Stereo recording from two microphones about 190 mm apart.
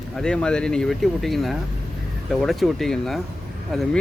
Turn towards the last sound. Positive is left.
turn(degrees=0)  # may be behind; listen again after turning